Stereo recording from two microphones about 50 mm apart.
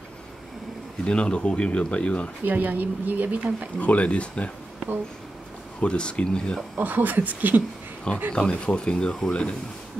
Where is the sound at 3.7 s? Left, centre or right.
Left.